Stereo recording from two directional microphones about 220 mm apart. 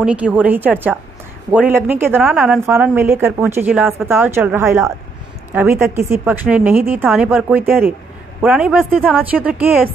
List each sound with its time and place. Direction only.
0.0 s a woman's voice: 5° right (ahead or behind)